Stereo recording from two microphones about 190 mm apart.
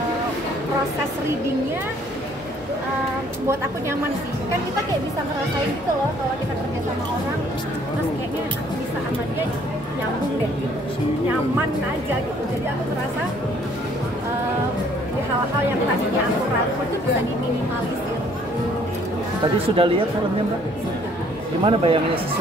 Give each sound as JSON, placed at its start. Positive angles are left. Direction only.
{"t": 19.4, "sound": "a man's voice", "side_deg": -30}
{"t": 21.6, "sound": "a man's voice", "side_deg": -30}